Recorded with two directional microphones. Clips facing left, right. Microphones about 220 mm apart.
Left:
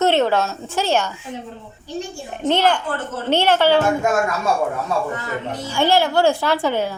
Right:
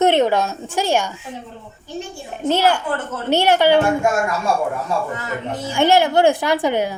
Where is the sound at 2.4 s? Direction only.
10° right (ahead or behind).